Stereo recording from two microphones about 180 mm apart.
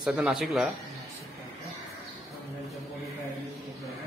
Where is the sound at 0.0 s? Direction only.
5° right (ahead or behind).